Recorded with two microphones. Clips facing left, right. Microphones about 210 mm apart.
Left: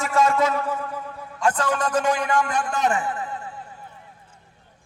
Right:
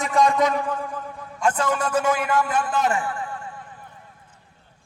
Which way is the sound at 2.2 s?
5° right (ahead or behind).